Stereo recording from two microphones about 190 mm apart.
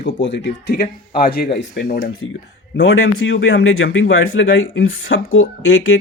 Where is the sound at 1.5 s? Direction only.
65° left (ahead or behind).